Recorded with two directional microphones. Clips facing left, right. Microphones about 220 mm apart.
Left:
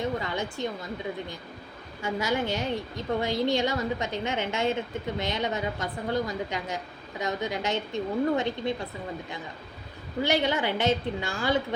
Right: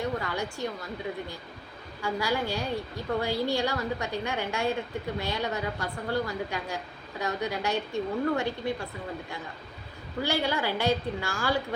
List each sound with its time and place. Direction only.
0.0 s a woman's voice: 20° left (ahead or behind)
2.0 s a woman's voice: 20° left (ahead or behind)
10.2 s a woman's voice: 20° left (ahead or behind)